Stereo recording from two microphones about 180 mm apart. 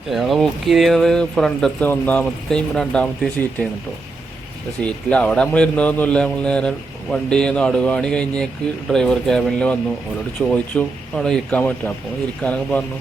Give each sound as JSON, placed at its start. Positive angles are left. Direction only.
{"t": 0.1, "sound": "a man's voice", "side_deg": 0}
{"t": 4.8, "sound": "a man's voice", "side_deg": 5}